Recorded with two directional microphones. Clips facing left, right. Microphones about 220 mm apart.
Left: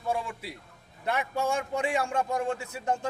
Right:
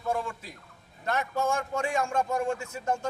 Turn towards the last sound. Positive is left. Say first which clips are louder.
# even
turn(degrees=15)  # may be behind; listen again after turning